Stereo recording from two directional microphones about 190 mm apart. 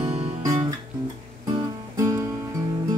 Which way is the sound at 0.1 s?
30° right (ahead or behind).